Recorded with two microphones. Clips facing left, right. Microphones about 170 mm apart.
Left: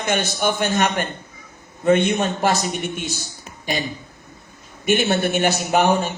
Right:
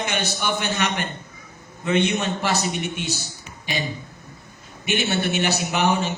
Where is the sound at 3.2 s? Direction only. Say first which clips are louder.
Left 2 dB; 50° left (ahead or behind).